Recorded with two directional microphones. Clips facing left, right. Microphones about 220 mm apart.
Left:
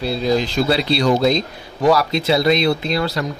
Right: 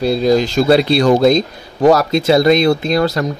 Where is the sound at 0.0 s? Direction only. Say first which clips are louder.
Right 6 dB; 45° right (ahead or behind).